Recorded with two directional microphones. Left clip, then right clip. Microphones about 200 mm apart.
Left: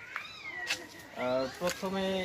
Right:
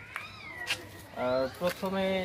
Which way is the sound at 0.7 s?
5° right (ahead or behind).